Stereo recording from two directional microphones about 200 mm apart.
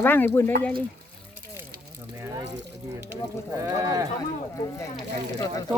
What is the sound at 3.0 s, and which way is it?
Speech, 10° right (ahead or behind).